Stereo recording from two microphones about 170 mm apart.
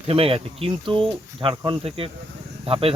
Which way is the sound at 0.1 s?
35° right (ahead or behind).